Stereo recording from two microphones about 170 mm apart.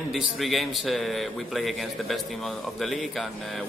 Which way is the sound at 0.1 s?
Centre (ahead or behind).